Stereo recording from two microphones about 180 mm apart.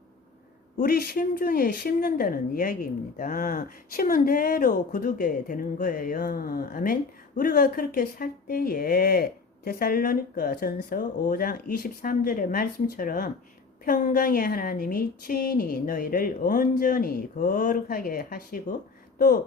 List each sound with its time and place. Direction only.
0.8 s speech: 55° left (ahead or behind)